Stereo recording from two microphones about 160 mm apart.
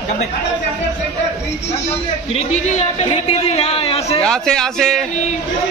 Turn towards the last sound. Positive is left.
turn(degrees=5)  # may be behind; listen again after turning